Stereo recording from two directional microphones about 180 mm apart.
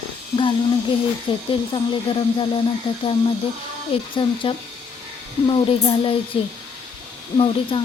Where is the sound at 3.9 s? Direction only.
30° left (ahead or behind).